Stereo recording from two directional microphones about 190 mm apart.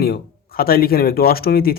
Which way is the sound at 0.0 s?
55° left (ahead or behind).